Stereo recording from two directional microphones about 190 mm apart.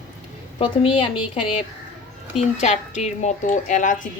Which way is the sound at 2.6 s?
35° left (ahead or behind).